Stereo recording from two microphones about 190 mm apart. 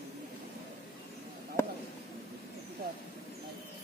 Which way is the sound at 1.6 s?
15° left (ahead or behind).